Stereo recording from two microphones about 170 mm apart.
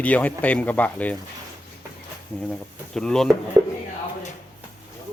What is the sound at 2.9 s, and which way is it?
Speech, 5° left (ahead or behind).